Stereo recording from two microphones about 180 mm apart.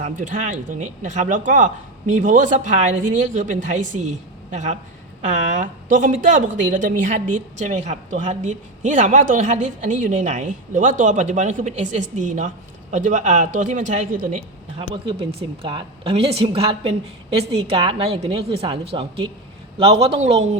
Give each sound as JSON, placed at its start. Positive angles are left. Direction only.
{"t": 0.0, "sound": "a woman's voice", "side_deg": -45}
{"t": 14.8, "sound": "a woman's voice", "side_deg": -30}